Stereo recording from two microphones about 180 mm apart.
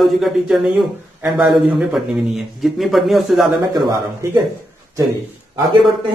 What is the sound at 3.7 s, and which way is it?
Speech, 15° right (ahead or behind).